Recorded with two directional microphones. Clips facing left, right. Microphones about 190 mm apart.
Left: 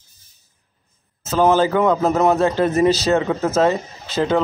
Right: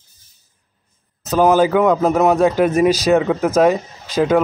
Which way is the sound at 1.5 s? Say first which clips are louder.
Right 3 dB; 10° right (ahead or behind).